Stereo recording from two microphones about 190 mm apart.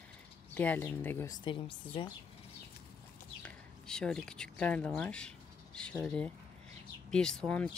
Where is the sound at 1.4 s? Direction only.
25° left (ahead or behind).